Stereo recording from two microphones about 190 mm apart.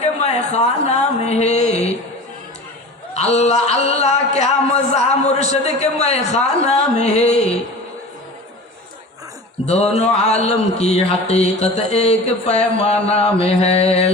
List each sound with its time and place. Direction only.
0.2 s speech: 35° left (ahead or behind)
3.2 s speech: 35° left (ahead or behind)
9.6 s speech: 35° left (ahead or behind)